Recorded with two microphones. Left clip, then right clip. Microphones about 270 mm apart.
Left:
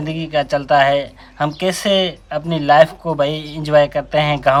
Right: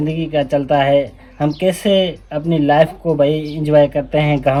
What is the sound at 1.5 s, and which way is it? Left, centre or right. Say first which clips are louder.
Speech: right 2 dB; left.